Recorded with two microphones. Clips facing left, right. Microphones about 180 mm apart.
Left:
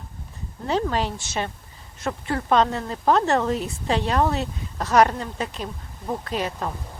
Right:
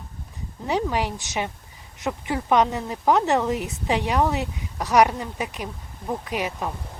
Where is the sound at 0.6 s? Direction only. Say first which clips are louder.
Left 1 dB; 15° right (ahead or behind).